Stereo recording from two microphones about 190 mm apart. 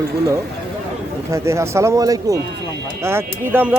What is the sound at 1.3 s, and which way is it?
Speech, 15° right (ahead or behind).